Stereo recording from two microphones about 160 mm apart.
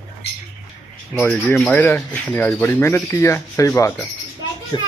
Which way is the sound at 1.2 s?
10° left (ahead or behind).